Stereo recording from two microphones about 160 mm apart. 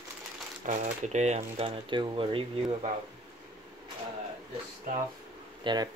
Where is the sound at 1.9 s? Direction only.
30° right (ahead or behind).